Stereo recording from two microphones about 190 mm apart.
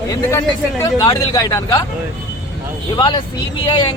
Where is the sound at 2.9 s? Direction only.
25° left (ahead or behind).